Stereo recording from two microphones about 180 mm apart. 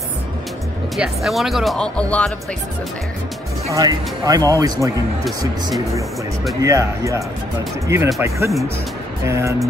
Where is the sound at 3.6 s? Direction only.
20° right (ahead or behind).